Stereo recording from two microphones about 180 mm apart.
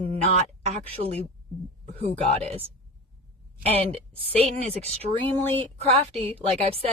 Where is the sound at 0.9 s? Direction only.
35° right (ahead or behind).